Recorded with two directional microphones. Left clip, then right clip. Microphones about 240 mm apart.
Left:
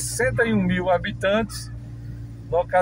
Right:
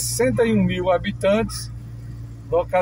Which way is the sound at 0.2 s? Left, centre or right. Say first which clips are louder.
Right 2 dB; centre.